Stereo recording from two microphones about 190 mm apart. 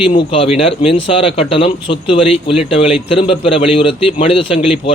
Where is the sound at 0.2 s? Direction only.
30° left (ahead or behind).